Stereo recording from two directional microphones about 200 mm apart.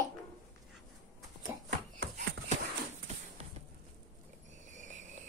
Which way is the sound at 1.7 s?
50° right (ahead or behind).